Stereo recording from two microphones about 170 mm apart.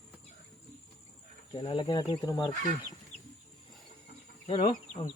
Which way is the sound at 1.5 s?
30° left (ahead or behind).